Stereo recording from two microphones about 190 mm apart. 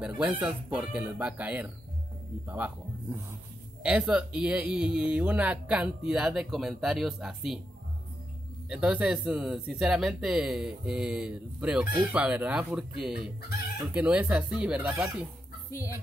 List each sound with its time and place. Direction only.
0.0 s speech: 5° right (ahead or behind)
3.8 s speech: 5° right (ahead or behind)
8.6 s speech: 5° right (ahead or behind)
15.7 s speech: 15° left (ahead or behind)